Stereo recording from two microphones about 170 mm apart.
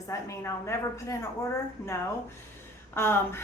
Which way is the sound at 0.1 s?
15° left (ahead or behind).